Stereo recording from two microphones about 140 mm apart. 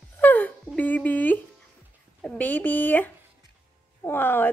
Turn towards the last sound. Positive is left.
turn(degrees=15)  # may be behind; listen again after turning